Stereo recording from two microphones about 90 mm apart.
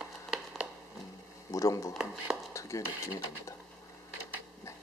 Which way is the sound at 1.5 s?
35° left (ahead or behind).